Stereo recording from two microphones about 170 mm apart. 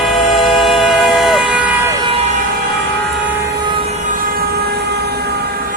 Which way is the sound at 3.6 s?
30° right (ahead or behind).